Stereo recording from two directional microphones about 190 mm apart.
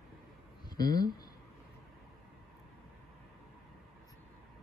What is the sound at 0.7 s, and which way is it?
Speech, 20° left (ahead or behind).